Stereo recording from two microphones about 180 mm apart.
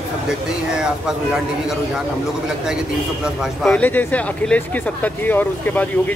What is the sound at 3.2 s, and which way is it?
Speech, centre (ahead or behind).